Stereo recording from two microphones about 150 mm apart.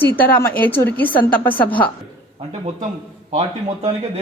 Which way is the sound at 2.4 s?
45° right (ahead or behind).